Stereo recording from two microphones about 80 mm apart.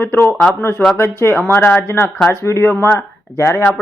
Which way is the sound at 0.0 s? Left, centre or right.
Left.